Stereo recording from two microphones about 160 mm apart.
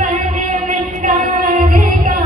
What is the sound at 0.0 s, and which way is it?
Music, 55° right (ahead or behind).